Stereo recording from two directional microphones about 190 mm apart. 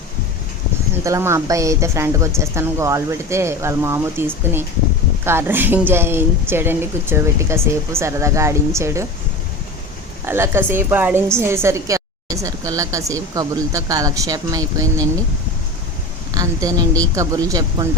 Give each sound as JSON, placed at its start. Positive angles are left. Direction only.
{"t": 1.0, "sound": "a woman's voice", "side_deg": -15}
{"t": 10.2, "sound": "a woman's voice", "side_deg": -10}
{"t": 16.3, "sound": "a woman's voice", "side_deg": -20}